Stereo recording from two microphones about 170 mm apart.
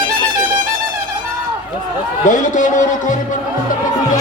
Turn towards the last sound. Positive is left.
turn(degrees=50)  # may be behind; listen again after turning